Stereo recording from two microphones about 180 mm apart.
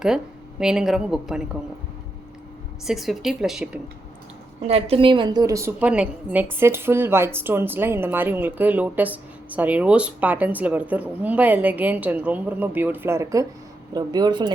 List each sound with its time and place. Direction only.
0.6 s a woman's voice: 5° right (ahead or behind)
2.8 s a woman's voice: centre (ahead or behind)
4.6 s speech: 35° right (ahead or behind)